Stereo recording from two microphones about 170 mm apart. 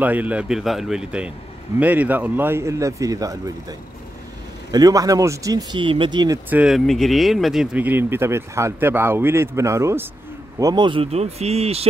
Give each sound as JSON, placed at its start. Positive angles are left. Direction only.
{"t": 0.0, "sound": "speech", "side_deg": -10}
{"t": 4.6, "sound": "speech", "side_deg": -20}
{"t": 6.5, "sound": "speech", "side_deg": -5}